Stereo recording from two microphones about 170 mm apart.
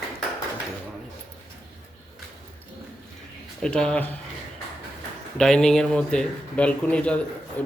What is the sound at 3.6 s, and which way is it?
Speech, 5° left (ahead or behind).